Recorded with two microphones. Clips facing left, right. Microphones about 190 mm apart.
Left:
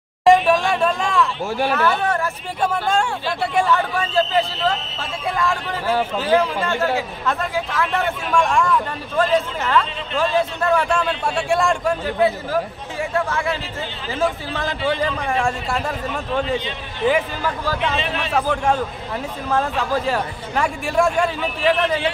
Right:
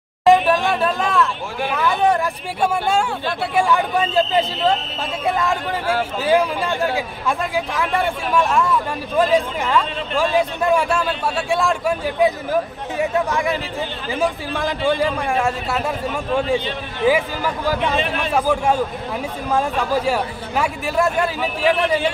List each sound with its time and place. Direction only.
0.2 s a sound: centre (ahead or behind)
1.8 s a man's voice: 15° right (ahead or behind)
5.9 s a man's voice: 10° right (ahead or behind)